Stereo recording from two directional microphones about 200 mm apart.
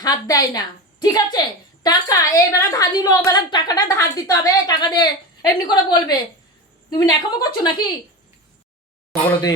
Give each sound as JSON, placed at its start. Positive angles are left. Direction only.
{"t": 0.0, "sound": "a woman's voice", "side_deg": 20}